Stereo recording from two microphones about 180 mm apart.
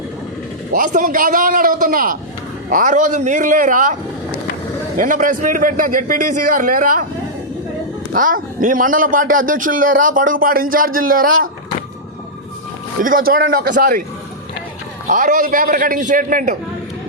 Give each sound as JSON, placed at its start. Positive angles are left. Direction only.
{"t": 0.7, "sound": "a man's voice", "side_deg": -50}
{"t": 4.9, "sound": "a man's voice", "side_deg": -45}
{"t": 8.1, "sound": "a man's voice", "side_deg": -50}
{"t": 13.0, "sound": "a man's voice", "side_deg": -50}
{"t": 15.1, "sound": "a man's voice", "side_deg": -45}